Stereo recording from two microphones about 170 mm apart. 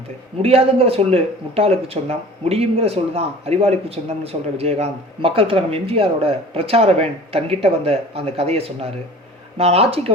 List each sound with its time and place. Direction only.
0.4 s speech: 35° right (ahead or behind)